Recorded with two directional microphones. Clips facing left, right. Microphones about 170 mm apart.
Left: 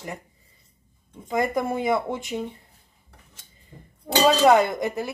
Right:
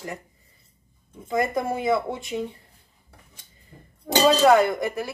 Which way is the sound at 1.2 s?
20° left (ahead or behind).